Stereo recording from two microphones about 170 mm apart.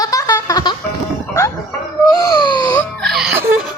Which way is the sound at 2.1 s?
20° left (ahead or behind).